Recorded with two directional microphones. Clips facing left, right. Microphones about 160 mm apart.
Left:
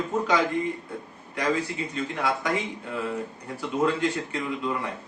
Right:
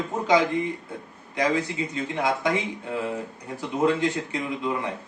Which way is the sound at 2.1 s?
20° right (ahead or behind).